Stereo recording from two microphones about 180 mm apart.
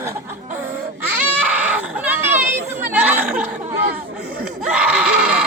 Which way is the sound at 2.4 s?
10° right (ahead or behind).